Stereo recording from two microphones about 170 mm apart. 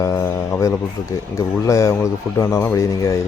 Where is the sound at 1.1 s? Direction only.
20° left (ahead or behind).